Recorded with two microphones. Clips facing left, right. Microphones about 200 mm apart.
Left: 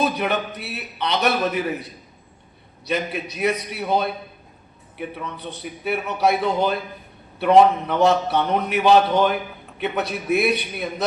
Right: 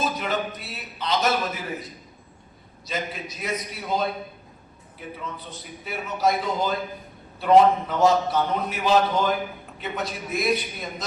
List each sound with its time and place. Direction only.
0.0 s a man's voice: 65° left (ahead or behind)